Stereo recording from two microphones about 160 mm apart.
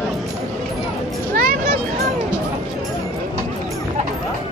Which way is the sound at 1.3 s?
65° right (ahead or behind).